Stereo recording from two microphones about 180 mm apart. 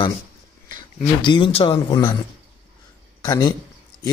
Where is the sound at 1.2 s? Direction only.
25° left (ahead or behind).